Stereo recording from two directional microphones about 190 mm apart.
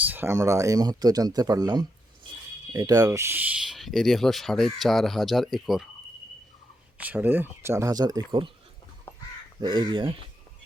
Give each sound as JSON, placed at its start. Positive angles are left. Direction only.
{"t": 0.0, "sound": "speech", "side_deg": -10}
{"t": 7.0, "sound": "speech", "side_deg": -10}
{"t": 9.6, "sound": "speech", "side_deg": -20}